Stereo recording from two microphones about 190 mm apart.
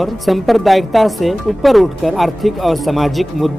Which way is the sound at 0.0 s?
Centre (ahead or behind).